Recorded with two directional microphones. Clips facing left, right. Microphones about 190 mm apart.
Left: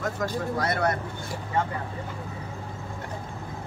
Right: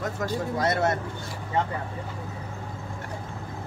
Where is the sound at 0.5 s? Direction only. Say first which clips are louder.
Right 2 dB; 25° right (ahead or behind).